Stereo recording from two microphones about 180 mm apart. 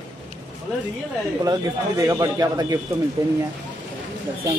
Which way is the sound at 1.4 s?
20° right (ahead or behind).